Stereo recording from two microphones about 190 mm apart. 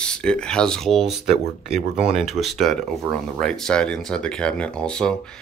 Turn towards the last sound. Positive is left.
turn(degrees=5)  # may be behind; listen again after turning